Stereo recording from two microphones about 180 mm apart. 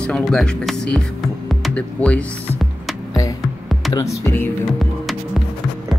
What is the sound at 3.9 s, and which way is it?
Speech, 15° left (ahead or behind).